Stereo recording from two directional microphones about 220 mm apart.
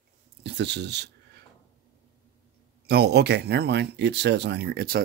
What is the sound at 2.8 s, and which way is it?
Speech, 45° right (ahead or behind).